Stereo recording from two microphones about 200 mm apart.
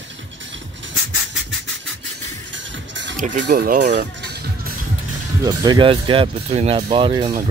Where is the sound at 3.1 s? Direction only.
40° right (ahead or behind).